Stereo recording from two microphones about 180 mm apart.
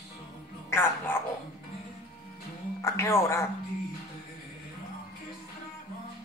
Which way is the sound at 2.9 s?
15° left (ahead or behind).